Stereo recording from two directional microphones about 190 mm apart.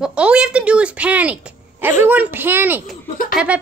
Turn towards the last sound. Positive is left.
turn(degrees=45)  # may be behind; listen again after turning